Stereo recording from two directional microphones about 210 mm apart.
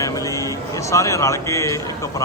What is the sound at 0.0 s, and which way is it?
Music, 15° left (ahead or behind).